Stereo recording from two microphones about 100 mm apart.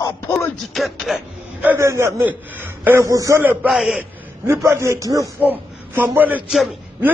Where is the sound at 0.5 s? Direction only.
Centre (ahead or behind).